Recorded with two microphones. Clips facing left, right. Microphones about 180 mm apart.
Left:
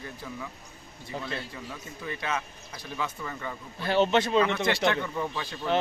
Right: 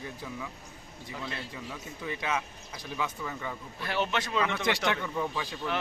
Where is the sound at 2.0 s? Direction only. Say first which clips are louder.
Even; 10° right (ahead or behind).